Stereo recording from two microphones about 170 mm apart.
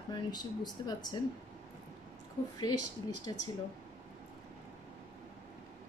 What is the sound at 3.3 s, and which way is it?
Speech, 25° left (ahead or behind).